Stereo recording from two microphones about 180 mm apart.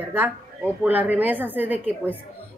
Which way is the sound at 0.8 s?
10° right (ahead or behind).